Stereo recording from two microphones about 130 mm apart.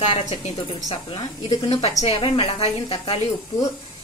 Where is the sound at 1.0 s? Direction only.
35° left (ahead or behind).